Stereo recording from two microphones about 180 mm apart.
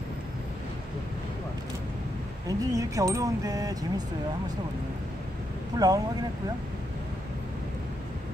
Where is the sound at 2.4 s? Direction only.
20° right (ahead or behind).